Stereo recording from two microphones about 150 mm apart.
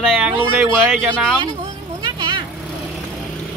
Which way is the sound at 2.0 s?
35° right (ahead or behind).